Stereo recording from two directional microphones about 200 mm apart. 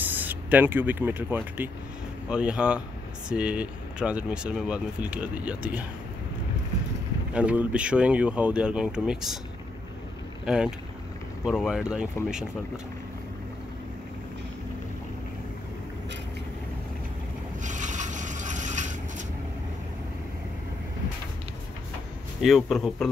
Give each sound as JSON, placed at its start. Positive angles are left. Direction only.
{"t": 0.0, "sound": "speech", "side_deg": -10}
{"t": 7.3, "sound": "speech", "side_deg": -5}
{"t": 10.4, "sound": "speech", "side_deg": -5}
{"t": 17.6, "sound": "vehicle", "side_deg": -40}
{"t": 22.4, "sound": "speech", "side_deg": 0}